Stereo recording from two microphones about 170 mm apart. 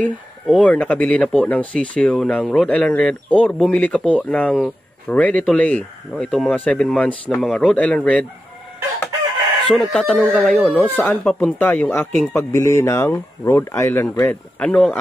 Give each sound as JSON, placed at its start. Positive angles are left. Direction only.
{"t": 0.5, "sound": "speech", "side_deg": 5}
{"t": 4.0, "sound": "speech", "side_deg": -5}
{"t": 4.3, "sound": "speech", "side_deg": 5}
{"t": 9.7, "sound": "speech", "side_deg": 0}